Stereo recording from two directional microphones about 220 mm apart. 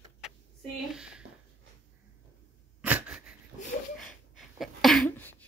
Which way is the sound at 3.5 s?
20° right (ahead or behind).